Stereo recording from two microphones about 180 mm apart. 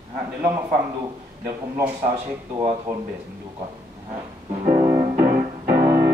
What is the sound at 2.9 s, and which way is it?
Speech, 10° right (ahead or behind).